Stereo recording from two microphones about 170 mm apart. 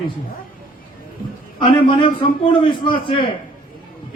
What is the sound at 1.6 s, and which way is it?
A man's voice, 30° left (ahead or behind).